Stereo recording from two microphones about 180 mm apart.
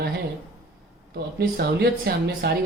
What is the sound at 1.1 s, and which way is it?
Speech, 60° right (ahead or behind).